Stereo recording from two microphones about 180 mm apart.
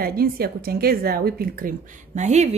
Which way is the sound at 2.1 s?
40° right (ahead or behind).